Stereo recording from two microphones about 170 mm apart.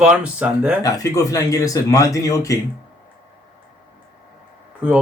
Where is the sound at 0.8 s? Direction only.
20° left (ahead or behind).